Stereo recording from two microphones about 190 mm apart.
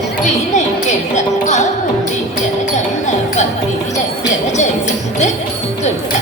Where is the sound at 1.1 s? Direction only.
40° left (ahead or behind).